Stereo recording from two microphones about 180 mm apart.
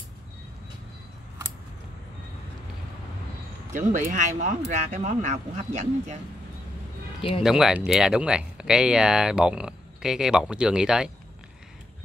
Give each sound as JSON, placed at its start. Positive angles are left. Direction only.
{"t": 3.7, "sound": "speech", "side_deg": -45}
{"t": 7.4, "sound": "speech", "side_deg": -5}